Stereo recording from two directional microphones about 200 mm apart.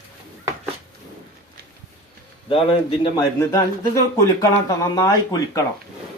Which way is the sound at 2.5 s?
25° left (ahead or behind).